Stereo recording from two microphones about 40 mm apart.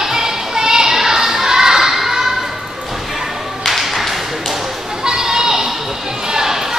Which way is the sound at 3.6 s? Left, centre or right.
Centre.